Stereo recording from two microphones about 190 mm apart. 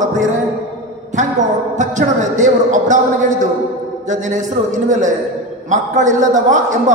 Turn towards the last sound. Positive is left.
turn(degrees=-40)  # may be behind; listen again after turning